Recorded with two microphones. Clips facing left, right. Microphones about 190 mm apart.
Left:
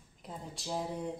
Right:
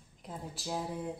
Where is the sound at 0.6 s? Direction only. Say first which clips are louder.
Right 1 dB; 5° right (ahead or behind).